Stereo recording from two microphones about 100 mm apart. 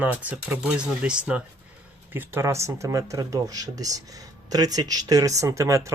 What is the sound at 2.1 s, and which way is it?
Speech, 25° right (ahead or behind).